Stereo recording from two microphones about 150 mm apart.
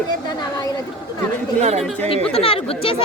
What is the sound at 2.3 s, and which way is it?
Speech, 40° left (ahead or behind).